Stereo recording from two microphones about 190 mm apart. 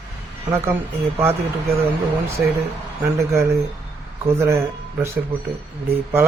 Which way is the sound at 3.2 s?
15° right (ahead or behind).